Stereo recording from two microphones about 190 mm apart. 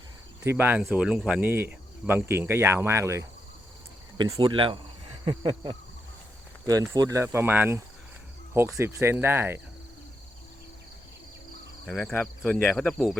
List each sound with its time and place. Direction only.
0.4 s speech: 10° right (ahead or behind)
8.8 s speech: 15° right (ahead or behind)
11.9 s speech: 5° left (ahead or behind)